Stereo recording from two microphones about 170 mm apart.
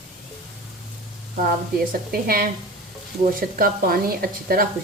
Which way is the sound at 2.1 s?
60° right (ahead or behind).